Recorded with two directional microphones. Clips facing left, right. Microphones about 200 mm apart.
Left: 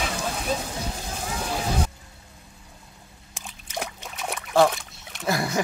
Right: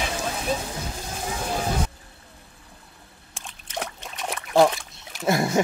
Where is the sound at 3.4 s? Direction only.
10° left (ahead or behind).